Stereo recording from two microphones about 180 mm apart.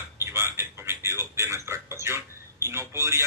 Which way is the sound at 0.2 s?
15° right (ahead or behind).